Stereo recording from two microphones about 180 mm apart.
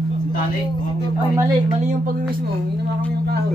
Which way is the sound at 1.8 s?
50° right (ahead or behind).